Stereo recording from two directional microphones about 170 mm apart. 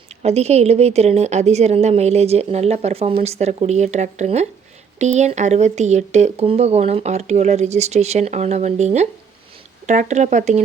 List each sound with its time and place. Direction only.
0.2 s speech: 40° right (ahead or behind)